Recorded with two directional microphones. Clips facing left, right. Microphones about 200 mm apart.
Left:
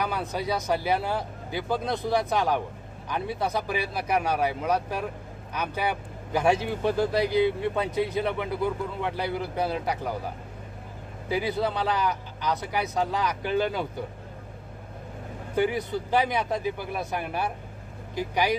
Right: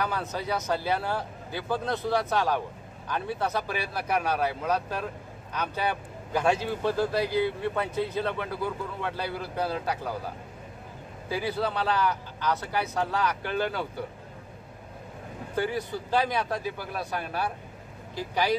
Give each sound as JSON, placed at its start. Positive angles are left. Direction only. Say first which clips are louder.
{"t": 0.0, "sound": "a man's voice", "louder": "left 2 dB", "side_deg": 15}
{"t": 11.2, "sound": "a man's voice", "louder": "left 2 dB", "side_deg": 20}
{"t": 15.5, "sound": "a man's voice", "louder": "left 4 dB", "side_deg": 15}